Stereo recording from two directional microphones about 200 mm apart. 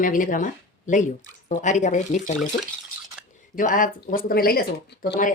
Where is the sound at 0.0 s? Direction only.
40° left (ahead or behind).